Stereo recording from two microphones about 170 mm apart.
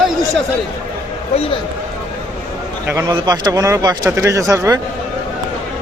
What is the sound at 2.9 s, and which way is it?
Speech, 20° right (ahead or behind).